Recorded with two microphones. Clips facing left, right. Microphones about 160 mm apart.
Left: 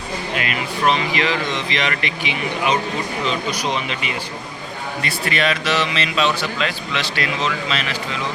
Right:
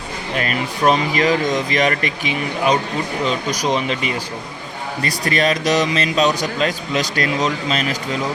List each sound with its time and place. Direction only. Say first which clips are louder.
0.3 s a man's voice: right 5 dB; 40° right (ahead or behind)